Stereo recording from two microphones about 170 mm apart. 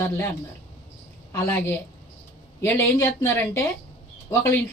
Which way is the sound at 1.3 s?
15° left (ahead or behind).